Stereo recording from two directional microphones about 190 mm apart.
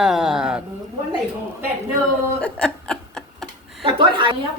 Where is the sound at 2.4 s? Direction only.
5° left (ahead or behind).